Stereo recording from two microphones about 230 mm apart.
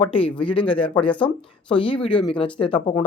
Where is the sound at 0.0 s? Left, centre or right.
Left.